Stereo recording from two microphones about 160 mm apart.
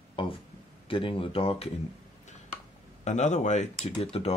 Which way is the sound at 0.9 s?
35° left (ahead or behind).